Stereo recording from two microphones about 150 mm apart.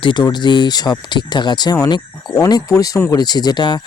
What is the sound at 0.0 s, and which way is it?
Speech, 30° left (ahead or behind).